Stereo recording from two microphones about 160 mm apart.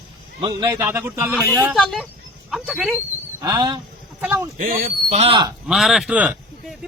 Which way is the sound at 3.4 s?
25° right (ahead or behind).